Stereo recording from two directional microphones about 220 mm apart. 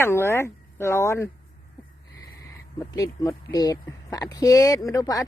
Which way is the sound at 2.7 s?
15° left (ahead or behind).